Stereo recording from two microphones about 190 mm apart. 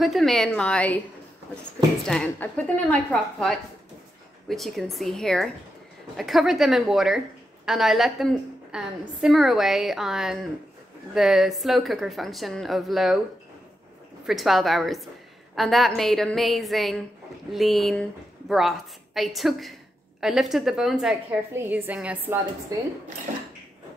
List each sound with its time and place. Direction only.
0.0 s a woman's voice: centre (ahead or behind)
2.0 s a woman's voice: 5° left (ahead or behind)
14.2 s a woman's voice: centre (ahead or behind)